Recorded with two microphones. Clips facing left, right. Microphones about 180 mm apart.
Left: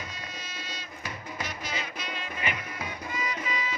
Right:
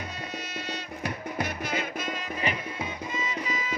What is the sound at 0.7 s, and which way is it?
Music, 60° right (ahead or behind).